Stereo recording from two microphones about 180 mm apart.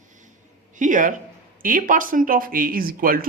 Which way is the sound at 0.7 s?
45° right (ahead or behind).